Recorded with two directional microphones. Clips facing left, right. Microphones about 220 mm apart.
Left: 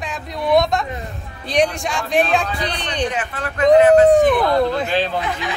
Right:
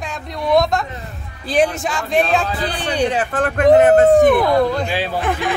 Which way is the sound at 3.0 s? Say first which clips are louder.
Right 7 dB; 35° right (ahead or behind).